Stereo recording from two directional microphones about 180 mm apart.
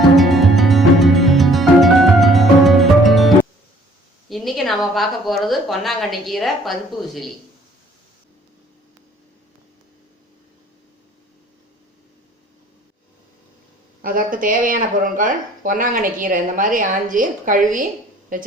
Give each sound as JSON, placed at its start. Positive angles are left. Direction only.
{"t": 0.2, "sound": "music", "side_deg": 0}
{"t": 4.3, "sound": "a woman's voice", "side_deg": 0}
{"t": 14.0, "sound": "speech", "side_deg": -50}